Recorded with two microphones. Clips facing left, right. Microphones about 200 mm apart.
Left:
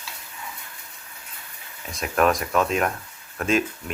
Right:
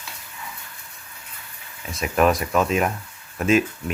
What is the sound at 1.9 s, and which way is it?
Speech, 5° right (ahead or behind).